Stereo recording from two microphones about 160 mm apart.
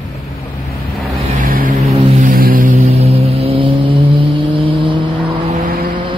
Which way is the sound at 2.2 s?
60° right (ahead or behind).